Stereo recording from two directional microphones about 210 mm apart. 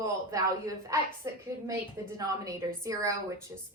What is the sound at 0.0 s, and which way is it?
A woman's voice, 15° right (ahead or behind).